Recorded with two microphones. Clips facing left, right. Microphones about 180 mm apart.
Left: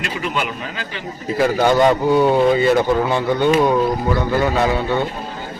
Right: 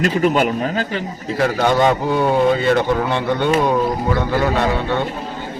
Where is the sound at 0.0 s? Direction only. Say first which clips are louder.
Right 8 dB; 40° right (ahead or behind).